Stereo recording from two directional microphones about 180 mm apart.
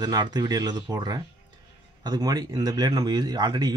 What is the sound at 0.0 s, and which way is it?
Speech, 20° right (ahead or behind).